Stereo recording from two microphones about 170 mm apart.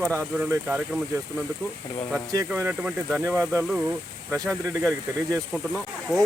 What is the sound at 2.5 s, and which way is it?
Speech, 5° right (ahead or behind).